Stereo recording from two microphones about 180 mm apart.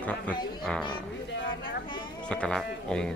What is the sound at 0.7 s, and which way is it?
Speech, 5° left (ahead or behind).